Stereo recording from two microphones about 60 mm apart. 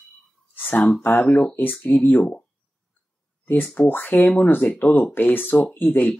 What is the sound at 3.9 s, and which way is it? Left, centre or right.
Speech, left.